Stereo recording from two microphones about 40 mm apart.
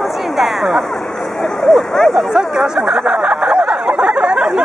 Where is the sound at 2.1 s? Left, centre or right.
Centre.